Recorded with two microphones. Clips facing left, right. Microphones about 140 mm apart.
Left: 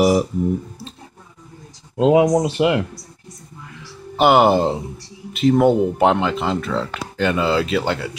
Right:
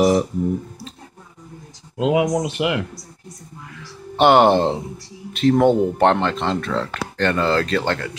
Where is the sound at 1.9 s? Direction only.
35° left (ahead or behind).